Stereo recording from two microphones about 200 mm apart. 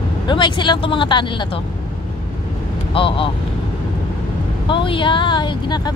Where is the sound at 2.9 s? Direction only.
25° left (ahead or behind).